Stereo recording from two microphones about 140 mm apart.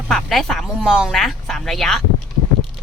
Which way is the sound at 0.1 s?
Centre (ahead or behind).